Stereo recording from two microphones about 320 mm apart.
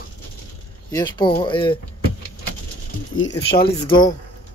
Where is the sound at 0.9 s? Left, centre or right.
Centre.